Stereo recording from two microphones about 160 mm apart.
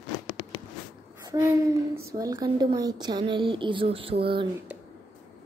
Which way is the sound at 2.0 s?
20° right (ahead or behind).